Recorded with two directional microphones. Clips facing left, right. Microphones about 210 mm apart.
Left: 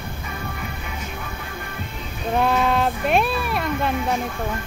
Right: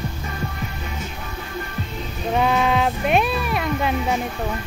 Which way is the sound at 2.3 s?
Centre (ahead or behind).